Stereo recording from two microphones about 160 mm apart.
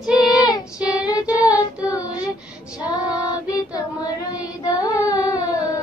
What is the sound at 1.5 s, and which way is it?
Child singing, 20° left (ahead or behind).